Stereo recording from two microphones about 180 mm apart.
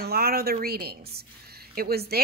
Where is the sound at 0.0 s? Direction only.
60° right (ahead or behind).